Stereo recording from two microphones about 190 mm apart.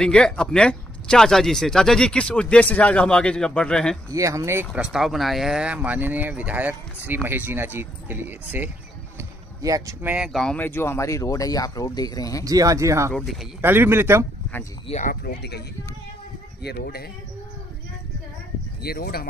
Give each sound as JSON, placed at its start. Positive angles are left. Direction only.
{"t": 0.0, "sound": "speech", "side_deg": 5}
{"t": 4.1, "sound": "speech", "side_deg": -15}
{"t": 10.1, "sound": "speech", "side_deg": 0}
{"t": 12.4, "sound": "speech", "side_deg": -20}
{"t": 13.1, "sound": "speech", "side_deg": 0}
{"t": 13.6, "sound": "speech", "side_deg": -10}
{"t": 14.9, "sound": "speech", "side_deg": 40}
{"t": 15.2, "sound": "speech", "side_deg": 60}
{"t": 16.6, "sound": "speech", "side_deg": 60}
{"t": 18.8, "sound": "speech", "side_deg": 55}